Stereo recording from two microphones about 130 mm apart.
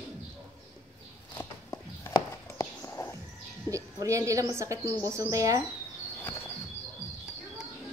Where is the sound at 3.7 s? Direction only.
25° right (ahead or behind).